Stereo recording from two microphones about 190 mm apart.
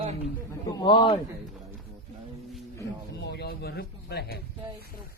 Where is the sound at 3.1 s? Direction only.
60° left (ahead or behind).